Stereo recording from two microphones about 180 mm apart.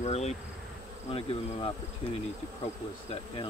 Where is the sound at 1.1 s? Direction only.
30° left (ahead or behind).